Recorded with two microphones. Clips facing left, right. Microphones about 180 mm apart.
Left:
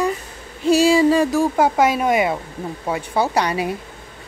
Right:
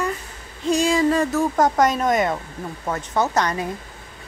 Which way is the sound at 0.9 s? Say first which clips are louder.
Left 4 dB; 10° left (ahead or behind).